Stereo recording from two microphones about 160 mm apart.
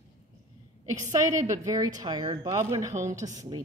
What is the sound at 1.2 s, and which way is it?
A woman's voice, 20° right (ahead or behind).